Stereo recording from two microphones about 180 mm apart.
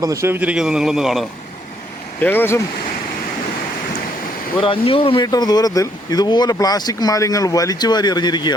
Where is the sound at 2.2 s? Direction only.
10° left (ahead or behind).